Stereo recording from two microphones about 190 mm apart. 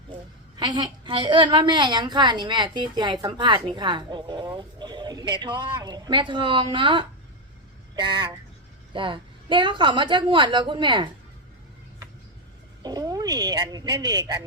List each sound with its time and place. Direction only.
0.6 s a woman's voice: 25° right (ahead or behind)
12.8 s speech: 20° right (ahead or behind)